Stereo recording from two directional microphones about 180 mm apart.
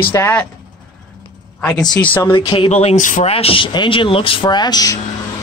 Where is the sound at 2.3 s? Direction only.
25° left (ahead or behind).